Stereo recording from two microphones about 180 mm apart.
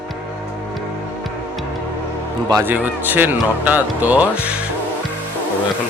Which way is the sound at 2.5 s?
10° right (ahead or behind).